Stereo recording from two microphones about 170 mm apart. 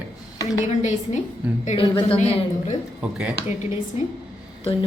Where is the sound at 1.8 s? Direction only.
30° left (ahead or behind).